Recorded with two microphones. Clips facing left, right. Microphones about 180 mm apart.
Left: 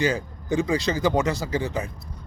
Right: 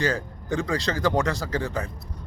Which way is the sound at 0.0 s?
20° left (ahead or behind).